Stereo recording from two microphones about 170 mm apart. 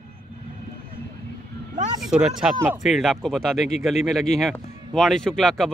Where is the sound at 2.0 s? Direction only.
5° right (ahead or behind).